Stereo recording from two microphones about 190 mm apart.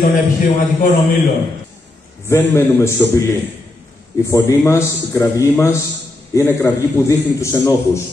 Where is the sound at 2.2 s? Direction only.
15° left (ahead or behind).